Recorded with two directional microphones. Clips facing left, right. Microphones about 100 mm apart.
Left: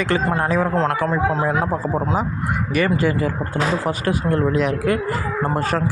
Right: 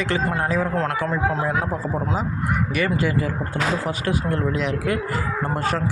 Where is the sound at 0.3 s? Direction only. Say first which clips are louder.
Left 3 dB; 65° left (ahead or behind).